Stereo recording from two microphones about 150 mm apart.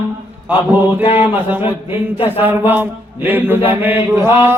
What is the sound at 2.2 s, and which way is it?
Mantra, 10° right (ahead or behind).